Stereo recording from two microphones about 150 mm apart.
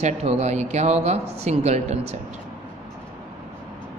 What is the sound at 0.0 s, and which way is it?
A woman's voice, 45° right (ahead or behind).